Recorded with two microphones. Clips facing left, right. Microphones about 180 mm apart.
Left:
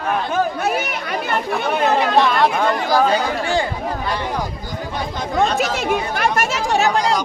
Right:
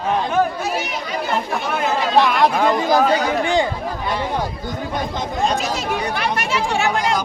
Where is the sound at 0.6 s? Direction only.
60° left (ahead or behind).